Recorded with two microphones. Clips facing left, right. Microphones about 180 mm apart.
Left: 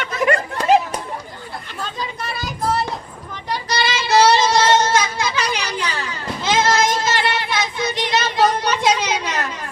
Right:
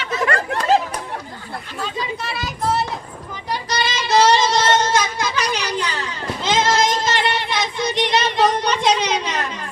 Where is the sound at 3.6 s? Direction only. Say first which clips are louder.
Left 2 dB; 10° left (ahead or behind).